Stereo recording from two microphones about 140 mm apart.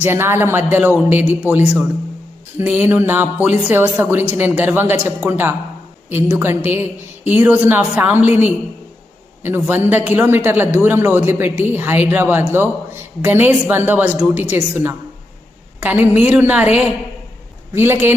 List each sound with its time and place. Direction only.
0.0 s a man's voice: 15° right (ahead or behind)